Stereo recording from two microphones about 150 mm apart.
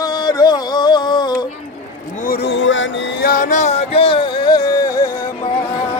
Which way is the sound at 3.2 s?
65° left (ahead or behind).